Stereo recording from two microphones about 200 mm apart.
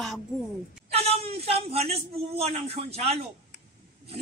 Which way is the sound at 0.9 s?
30° right (ahead or behind).